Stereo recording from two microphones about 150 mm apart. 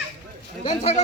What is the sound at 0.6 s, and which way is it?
Speech, 40° left (ahead or behind).